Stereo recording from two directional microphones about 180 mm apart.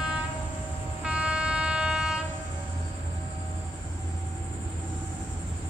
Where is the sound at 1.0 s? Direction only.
5° right (ahead or behind).